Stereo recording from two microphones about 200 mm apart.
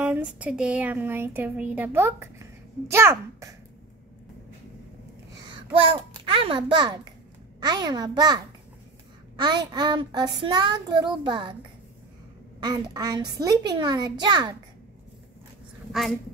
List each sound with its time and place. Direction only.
0.0 s speech: 5° right (ahead or behind)
5.5 s a child's voice: 25° right (ahead or behind)
7.6 s child singing: 20° right (ahead or behind)
9.4 s child singing: 20° right (ahead or behind)
12.5 s child singing: 20° right (ahead or behind)
15.9 s a woman's voice: centre (ahead or behind)